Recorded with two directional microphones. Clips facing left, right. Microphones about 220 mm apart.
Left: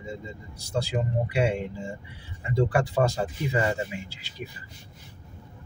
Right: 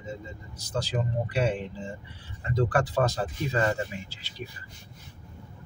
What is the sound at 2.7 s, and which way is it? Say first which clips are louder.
Speech: left 1 dB; 15° left (ahead or behind).